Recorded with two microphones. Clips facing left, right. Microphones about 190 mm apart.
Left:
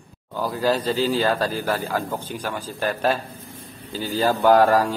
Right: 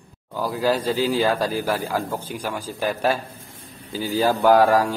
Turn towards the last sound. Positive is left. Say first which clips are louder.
# even
turn(degrees=-10)  # may be behind; listen again after turning